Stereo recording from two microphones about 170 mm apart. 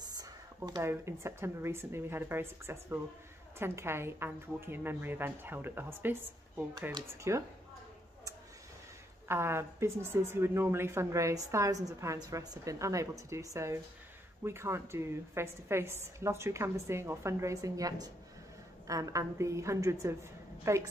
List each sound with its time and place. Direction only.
0.7 s a woman's voice: 20° right (ahead or behind)
9.3 s a woman's voice: 15° right (ahead or behind)